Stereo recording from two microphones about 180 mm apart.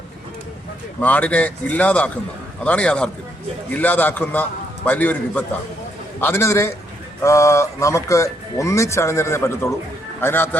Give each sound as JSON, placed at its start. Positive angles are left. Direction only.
{"t": 1.0, "sound": "a man's voice", "side_deg": 10}